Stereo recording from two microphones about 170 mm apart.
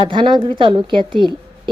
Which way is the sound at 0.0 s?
30° right (ahead or behind).